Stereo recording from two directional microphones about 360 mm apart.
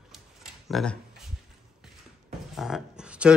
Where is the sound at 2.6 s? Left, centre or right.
Centre.